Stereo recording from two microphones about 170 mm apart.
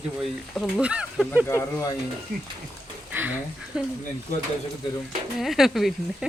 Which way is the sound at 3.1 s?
10° right (ahead or behind).